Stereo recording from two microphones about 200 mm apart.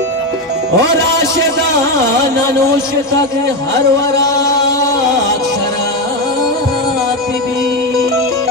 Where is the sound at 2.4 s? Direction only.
15° left (ahead or behind).